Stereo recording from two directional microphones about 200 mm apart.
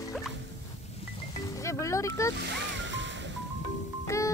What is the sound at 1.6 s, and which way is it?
Music, 15° left (ahead or behind).